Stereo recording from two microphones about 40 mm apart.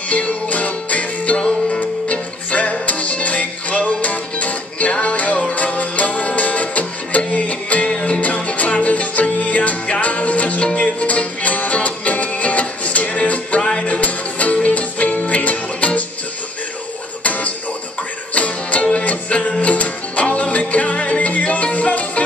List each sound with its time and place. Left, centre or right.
0.1 s music: left
11.1 s music: left
13.6 s music: centre
13.8 s music: left
17.2 s music: left